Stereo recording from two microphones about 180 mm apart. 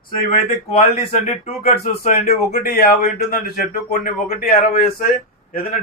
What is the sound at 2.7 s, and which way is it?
Speech, 55° left (ahead or behind).